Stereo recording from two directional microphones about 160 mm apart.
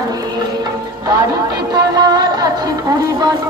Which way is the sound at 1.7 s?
25° right (ahead or behind).